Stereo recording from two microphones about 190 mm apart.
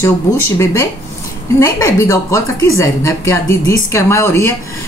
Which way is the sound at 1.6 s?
15° left (ahead or behind).